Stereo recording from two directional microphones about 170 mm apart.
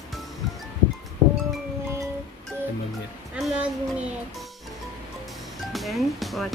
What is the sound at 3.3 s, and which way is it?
Music, 5° right (ahead or behind).